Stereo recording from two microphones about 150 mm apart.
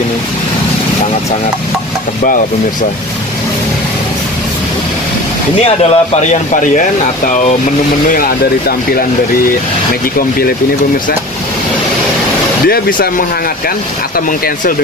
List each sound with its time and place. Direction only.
5.6 s speech: 45° left (ahead or behind)
8.1 s speech: 75° left (ahead or behind)
12.6 s speech: 90° left